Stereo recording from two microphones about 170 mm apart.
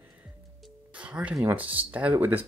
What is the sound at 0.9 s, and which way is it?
Speech, 5° right (ahead or behind).